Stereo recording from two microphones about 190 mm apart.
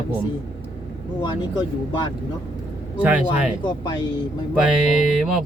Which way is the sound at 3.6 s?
20° left (ahead or behind).